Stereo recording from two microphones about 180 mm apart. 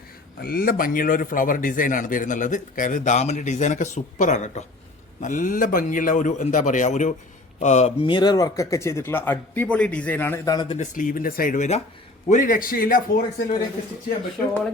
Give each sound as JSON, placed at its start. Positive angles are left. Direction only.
{"t": 0.4, "sound": "a man's voice", "side_deg": 55}
{"t": 10.8, "sound": "a man's voice", "side_deg": 50}